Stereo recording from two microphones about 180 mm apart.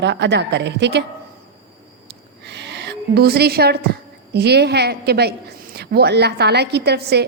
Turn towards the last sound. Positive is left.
turn(degrees=-65)  # may be behind; listen again after turning